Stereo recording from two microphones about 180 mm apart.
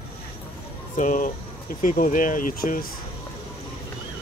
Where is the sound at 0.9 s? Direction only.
45° left (ahead or behind).